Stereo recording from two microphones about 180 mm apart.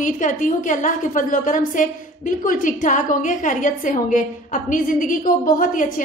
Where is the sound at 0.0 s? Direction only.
45° left (ahead or behind).